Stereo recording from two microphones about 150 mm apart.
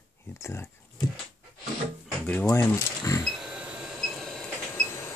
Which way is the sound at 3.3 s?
5° right (ahead or behind).